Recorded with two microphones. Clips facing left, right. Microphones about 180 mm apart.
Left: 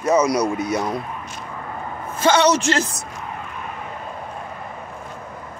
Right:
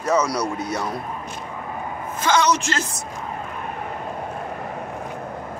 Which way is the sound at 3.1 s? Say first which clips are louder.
Right 1 dB; 30° right (ahead or behind).